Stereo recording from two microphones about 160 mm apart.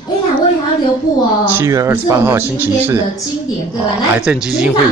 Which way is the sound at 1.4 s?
15° right (ahead or behind).